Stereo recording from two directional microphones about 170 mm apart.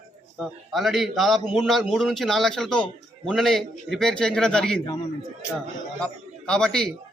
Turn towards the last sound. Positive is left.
turn(degrees=5)  # may be behind; listen again after turning